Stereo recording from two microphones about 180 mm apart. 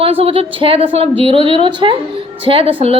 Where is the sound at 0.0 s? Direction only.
30° right (ahead or behind).